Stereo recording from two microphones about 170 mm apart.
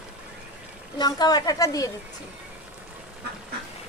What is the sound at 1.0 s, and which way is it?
Speech, 25° left (ahead or behind).